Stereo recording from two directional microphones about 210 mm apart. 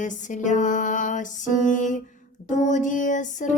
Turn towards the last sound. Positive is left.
turn(degrees=35)  # may be behind; listen again after turning